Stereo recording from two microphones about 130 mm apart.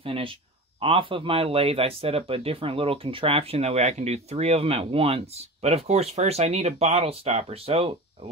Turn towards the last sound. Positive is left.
turn(degrees=-45)  # may be behind; listen again after turning